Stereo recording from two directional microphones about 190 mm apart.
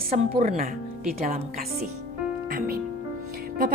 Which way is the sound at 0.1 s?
40° right (ahead or behind).